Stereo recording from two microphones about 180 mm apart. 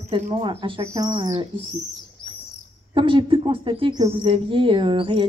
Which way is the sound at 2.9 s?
30° right (ahead or behind).